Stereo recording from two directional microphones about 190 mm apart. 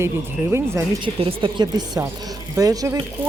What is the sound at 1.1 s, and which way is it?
Speech, 25° right (ahead or behind).